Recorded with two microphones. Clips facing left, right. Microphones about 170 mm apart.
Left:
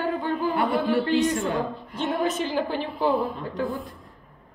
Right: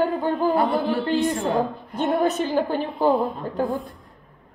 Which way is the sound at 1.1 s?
55° right (ahead or behind).